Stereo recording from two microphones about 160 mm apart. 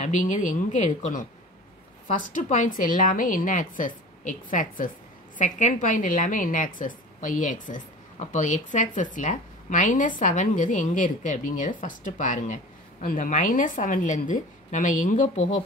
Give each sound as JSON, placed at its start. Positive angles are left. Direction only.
{"t": 0.0, "sound": "a woman's voice", "side_deg": 50}